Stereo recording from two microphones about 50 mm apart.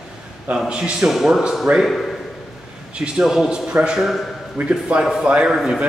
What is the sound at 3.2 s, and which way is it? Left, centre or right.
Speech, centre.